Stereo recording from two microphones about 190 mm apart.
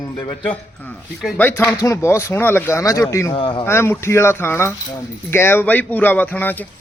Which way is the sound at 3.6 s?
10° left (ahead or behind).